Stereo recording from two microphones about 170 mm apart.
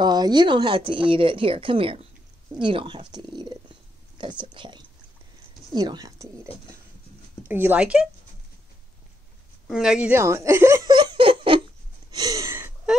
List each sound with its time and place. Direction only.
0.0 s speech: 25° right (ahead or behind); by 8.1 s 5° right (ahead or behind)
9.7 s speech: centre (ahead or behind); by 11.6 s 30° right (ahead or behind)
12.1 s a sound: 20° right (ahead or behind)